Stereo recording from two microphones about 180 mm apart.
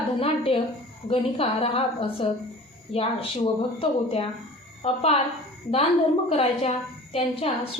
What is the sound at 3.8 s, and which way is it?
A woman's voice, 30° left (ahead or behind).